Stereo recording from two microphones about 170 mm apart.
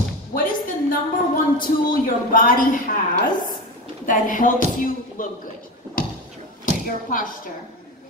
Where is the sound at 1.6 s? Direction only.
55° left (ahead or behind).